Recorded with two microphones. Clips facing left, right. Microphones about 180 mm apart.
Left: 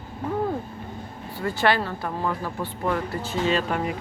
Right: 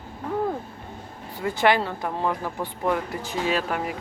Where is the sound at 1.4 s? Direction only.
15° right (ahead or behind).